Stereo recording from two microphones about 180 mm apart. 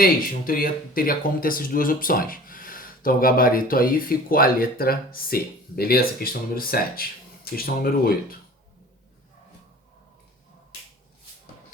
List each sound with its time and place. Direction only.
0.0 s speech: 55° left (ahead or behind)